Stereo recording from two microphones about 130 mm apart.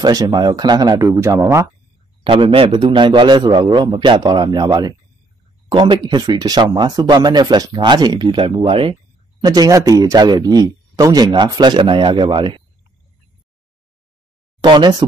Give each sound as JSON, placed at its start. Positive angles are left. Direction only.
{"t": 0.0, "sound": "speech", "side_deg": -30}
{"t": 2.2, "sound": "speech", "side_deg": -45}
{"t": 9.4, "sound": "speech", "side_deg": -30}
{"t": 14.6, "sound": "speech", "side_deg": -35}